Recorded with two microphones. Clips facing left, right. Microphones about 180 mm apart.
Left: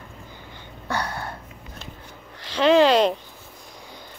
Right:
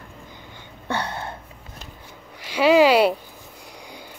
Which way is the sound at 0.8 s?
25° right (ahead or behind).